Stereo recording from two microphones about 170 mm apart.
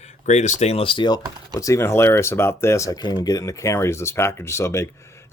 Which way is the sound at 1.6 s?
15° left (ahead or behind).